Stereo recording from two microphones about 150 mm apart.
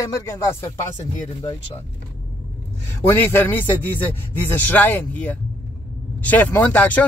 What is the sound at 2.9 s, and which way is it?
A man's voice, 15° left (ahead or behind).